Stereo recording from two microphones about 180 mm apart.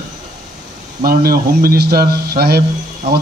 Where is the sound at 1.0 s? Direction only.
55° right (ahead or behind).